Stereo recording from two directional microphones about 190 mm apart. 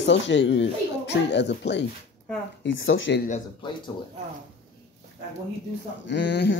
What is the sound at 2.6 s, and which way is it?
Speech, 85° left.